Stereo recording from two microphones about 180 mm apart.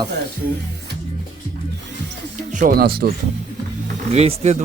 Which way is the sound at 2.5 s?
45° right (ahead or behind).